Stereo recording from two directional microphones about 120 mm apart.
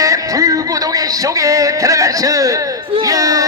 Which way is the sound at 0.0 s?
30° right (ahead or behind).